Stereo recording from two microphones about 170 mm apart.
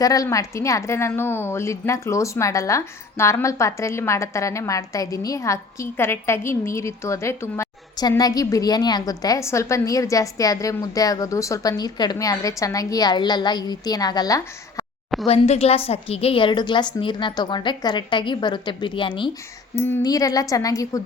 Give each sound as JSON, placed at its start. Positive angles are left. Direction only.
{"t": 0.0, "sound": "a woman's voice", "side_deg": 20}
{"t": 15.3, "sound": "a woman's voice", "side_deg": 35}
{"t": 19.7, "sound": "a woman's voice", "side_deg": 20}